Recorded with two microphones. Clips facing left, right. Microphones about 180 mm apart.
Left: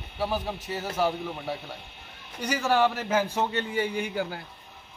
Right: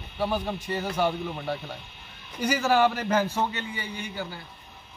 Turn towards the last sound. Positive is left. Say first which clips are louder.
# left 5 dB
turn(degrees=55)  # may be behind; listen again after turning